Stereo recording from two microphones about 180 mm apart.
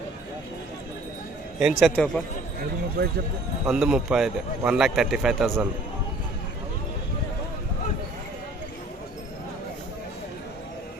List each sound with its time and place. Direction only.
1.5 s a man's voice: centre (ahead or behind)
3.0 s speech: 65° right (ahead or behind)
3.7 s a man's voice: 5° right (ahead or behind)